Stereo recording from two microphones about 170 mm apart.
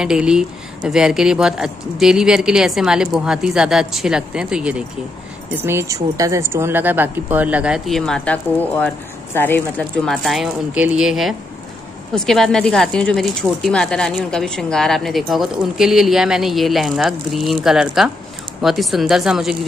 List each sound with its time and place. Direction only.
0.0 s speech: 5° right (ahead or behind)
10.1 s speech: centre (ahead or behind)